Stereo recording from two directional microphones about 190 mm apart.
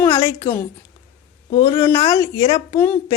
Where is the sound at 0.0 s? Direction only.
15° left (ahead or behind).